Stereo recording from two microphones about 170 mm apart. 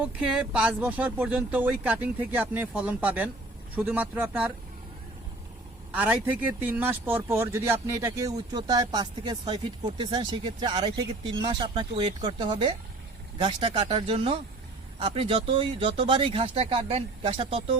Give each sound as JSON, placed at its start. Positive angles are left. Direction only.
{"t": 0.0, "sound": "speech", "side_deg": -5}
{"t": 5.9, "sound": "a man's voice", "side_deg": -10}